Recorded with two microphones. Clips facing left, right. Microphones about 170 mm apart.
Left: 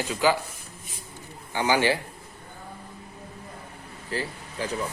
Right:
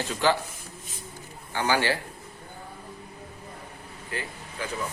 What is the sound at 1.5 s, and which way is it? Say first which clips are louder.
Speech: left 2 dB; 15° left (ahead or behind).